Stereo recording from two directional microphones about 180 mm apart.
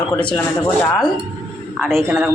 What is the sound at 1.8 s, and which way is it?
Speech, 15° right (ahead or behind).